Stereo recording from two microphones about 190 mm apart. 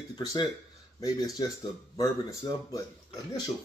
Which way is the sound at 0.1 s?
20° left (ahead or behind).